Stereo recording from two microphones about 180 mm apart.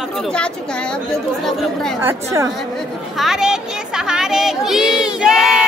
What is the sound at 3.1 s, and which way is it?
Speech, centre (ahead or behind).